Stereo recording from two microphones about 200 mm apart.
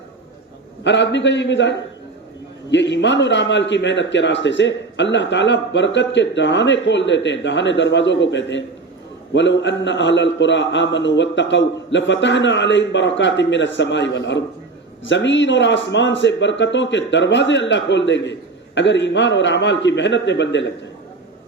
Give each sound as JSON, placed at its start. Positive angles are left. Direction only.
{"t": 0.9, "sound": "a man's voice", "side_deg": 60}